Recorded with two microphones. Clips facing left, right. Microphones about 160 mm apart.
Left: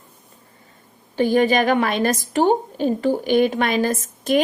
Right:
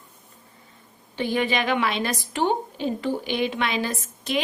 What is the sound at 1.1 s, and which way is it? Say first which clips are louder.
A woman's voice: left 7 dB; 45° left (ahead or behind).